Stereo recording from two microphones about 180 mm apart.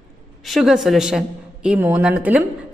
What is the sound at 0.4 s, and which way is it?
A woman's voice, centre (ahead or behind).